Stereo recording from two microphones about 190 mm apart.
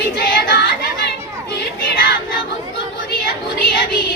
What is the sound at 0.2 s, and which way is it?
Singing, 55° left (ahead or behind).